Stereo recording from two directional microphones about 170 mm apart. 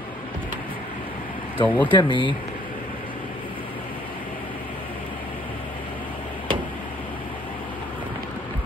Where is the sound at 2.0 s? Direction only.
30° left (ahead or behind).